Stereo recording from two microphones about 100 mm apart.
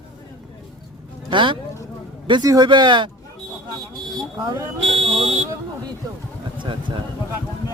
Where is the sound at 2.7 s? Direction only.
50° right (ahead or behind).